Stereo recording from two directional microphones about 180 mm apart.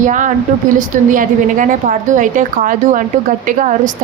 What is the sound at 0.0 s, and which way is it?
A woman's voice, 45° right (ahead or behind).